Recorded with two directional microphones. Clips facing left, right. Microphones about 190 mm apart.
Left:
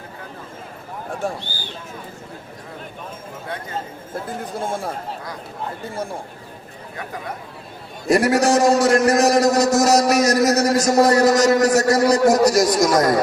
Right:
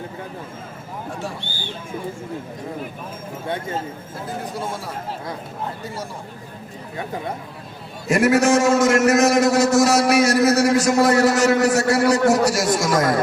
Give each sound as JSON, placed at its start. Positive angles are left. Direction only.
{"t": 1.2, "sound": "speech", "side_deg": 50}
{"t": 3.4, "sound": "speech", "side_deg": -25}
{"t": 8.0, "sound": "a man's voice", "side_deg": 35}